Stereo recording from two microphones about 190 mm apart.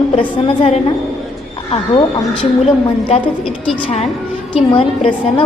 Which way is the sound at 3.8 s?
35° left (ahead or behind).